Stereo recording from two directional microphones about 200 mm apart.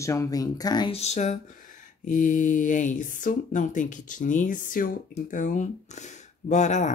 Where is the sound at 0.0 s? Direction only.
15° left (ahead or behind).